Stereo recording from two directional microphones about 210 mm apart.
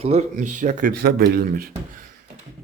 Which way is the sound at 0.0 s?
30° right (ahead or behind).